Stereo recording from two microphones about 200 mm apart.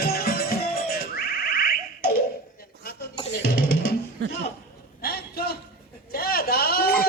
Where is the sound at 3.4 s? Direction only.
50° left (ahead or behind).